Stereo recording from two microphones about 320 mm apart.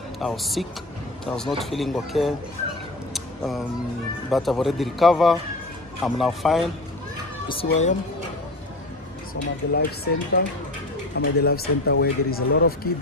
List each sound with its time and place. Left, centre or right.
0.2 s speech: centre
3.1 s a sound: centre
4.3 s speech: centre
7.6 s speech: left
9.3 s speech: left